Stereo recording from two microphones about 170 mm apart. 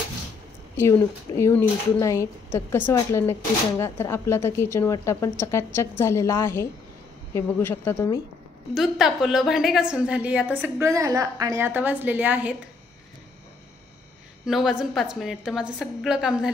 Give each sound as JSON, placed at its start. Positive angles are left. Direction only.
{"t": 0.7, "sound": "a woman's voice", "side_deg": 15}
{"t": 8.7, "sound": "a woman's voice", "side_deg": 0}
{"t": 14.4, "sound": "a woman's voice", "side_deg": -5}